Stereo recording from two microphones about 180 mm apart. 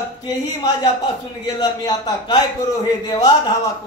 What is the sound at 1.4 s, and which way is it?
Speech, 20° left (ahead or behind).